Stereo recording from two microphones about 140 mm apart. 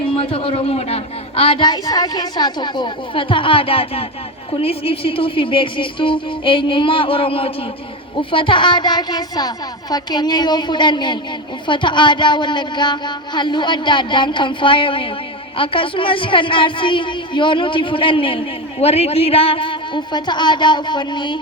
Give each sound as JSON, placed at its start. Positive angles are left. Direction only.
{"t": 0.2, "sound": "a woman's voice", "side_deg": 40}